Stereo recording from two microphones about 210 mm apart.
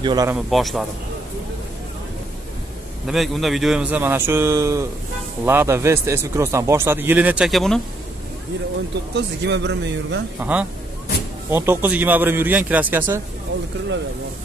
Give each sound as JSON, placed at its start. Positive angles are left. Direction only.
{"t": 0.0, "sound": "a man's voice", "side_deg": -15}
{"t": 0.5, "sound": "speech", "side_deg": 0}
{"t": 3.1, "sound": "a man's voice", "side_deg": 0}
{"t": 9.1, "sound": "speech", "side_deg": -55}
{"t": 10.4, "sound": "a man's voice", "side_deg": -5}